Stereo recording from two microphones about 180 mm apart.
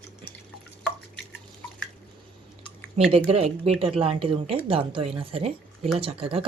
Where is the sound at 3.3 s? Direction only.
35° right (ahead or behind).